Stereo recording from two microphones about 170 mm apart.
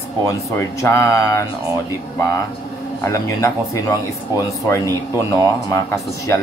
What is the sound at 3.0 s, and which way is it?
Speech, 20° left (ahead or behind).